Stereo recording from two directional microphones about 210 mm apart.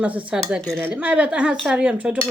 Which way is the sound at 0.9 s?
5° right (ahead or behind).